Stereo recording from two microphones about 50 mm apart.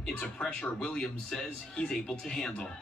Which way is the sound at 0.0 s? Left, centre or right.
Centre.